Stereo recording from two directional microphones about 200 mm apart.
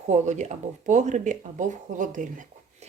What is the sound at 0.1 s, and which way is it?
Speech, 35° right (ahead or behind).